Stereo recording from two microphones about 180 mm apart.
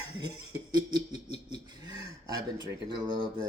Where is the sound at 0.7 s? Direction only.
20° right (ahead or behind).